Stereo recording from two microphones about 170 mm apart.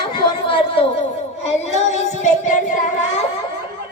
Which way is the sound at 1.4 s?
40° left (ahead or behind).